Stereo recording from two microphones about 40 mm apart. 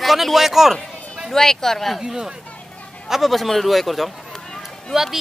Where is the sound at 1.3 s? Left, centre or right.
Centre.